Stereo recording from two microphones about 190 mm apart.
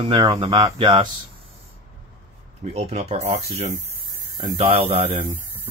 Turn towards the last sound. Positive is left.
turn(degrees=-25)  # may be behind; listen again after turning